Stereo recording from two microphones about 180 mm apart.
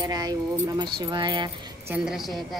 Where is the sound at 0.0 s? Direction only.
20° right (ahead or behind).